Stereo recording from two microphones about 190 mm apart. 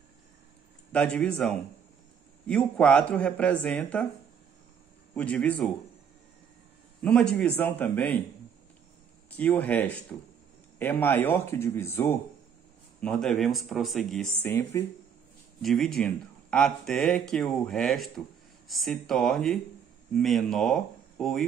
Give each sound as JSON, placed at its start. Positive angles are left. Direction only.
{"t": 0.9, "sound": "speech", "side_deg": 5}
{"t": 5.1, "sound": "speech", "side_deg": 5}
{"t": 7.0, "sound": "speech", "side_deg": 5}
{"t": 9.4, "sound": "speech", "side_deg": 5}
{"t": 14.4, "sound": "speech", "side_deg": 15}
{"t": 15.6, "sound": "speech", "side_deg": 0}